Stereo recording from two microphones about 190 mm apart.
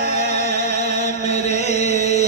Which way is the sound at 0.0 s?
35° left (ahead or behind).